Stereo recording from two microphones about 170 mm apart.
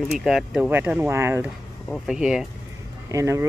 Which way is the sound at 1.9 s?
Centre (ahead or behind).